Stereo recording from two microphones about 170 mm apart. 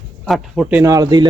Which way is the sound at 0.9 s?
25° right (ahead or behind).